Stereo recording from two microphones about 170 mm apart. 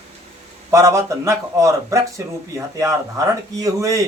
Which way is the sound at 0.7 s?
20° right (ahead or behind).